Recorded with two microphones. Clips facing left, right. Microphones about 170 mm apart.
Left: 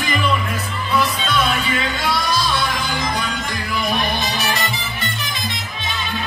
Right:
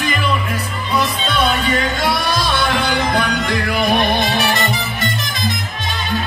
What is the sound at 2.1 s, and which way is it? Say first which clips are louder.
Music: right 2 dB; 65° right (ahead or behind).